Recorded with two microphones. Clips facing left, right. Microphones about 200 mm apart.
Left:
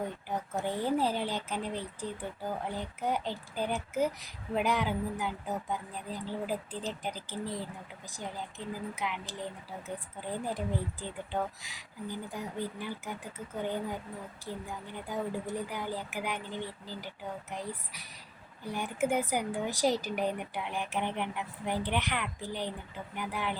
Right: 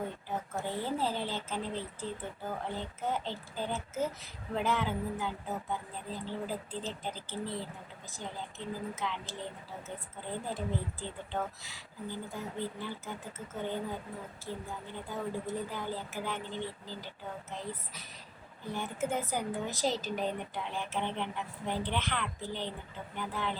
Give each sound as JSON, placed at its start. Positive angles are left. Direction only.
{"t": 0.3, "sound": "a woman's voice", "side_deg": 15}